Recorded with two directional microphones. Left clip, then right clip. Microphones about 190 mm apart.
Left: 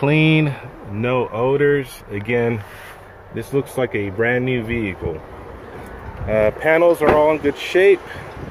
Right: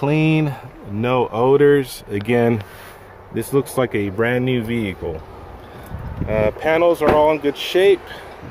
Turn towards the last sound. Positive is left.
turn(degrees=-15)  # may be behind; listen again after turning